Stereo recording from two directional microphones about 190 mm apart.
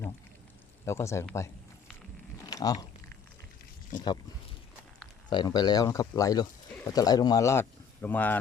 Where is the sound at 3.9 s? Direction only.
20° left (ahead or behind).